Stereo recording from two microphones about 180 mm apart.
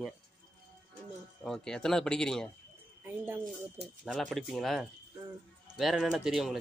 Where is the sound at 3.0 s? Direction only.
10° right (ahead or behind).